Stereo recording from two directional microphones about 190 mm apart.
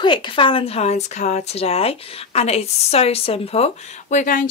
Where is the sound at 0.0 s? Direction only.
25° left (ahead or behind).